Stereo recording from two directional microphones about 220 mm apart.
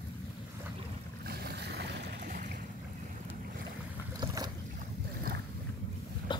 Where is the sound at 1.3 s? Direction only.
45° right (ahead or behind).